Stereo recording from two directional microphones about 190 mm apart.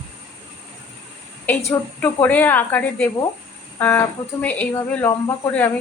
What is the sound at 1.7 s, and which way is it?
A woman's voice, 10° left (ahead or behind).